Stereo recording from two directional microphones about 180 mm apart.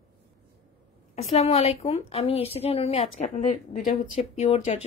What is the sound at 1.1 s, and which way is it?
Speech, 35° left (ahead or behind).